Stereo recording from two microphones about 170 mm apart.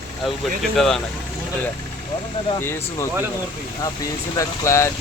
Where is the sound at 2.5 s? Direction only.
15° left (ahead or behind).